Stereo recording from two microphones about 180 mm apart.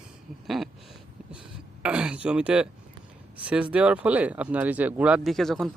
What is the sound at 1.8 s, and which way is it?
Speech, 5° right (ahead or behind).